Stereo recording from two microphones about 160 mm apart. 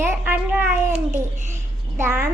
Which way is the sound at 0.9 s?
45° right (ahead or behind).